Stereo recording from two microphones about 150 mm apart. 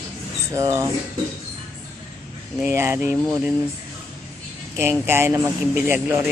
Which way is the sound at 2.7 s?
15° right (ahead or behind).